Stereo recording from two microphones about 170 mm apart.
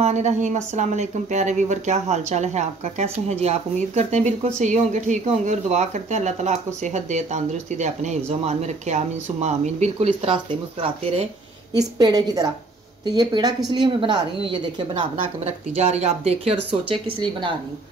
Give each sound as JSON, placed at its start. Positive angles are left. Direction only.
{"t": 0.0, "sound": "speech", "side_deg": -40}